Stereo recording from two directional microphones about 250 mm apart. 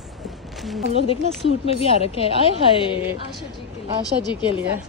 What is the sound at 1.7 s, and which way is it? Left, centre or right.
Speech, left.